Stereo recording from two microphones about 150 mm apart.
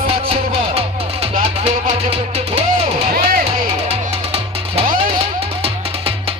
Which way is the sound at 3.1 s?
70° right (ahead or behind).